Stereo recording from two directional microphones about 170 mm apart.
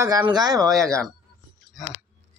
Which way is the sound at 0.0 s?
20° right (ahead or behind).